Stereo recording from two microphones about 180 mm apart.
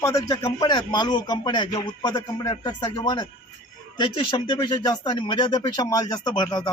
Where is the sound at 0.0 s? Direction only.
20° left (ahead or behind).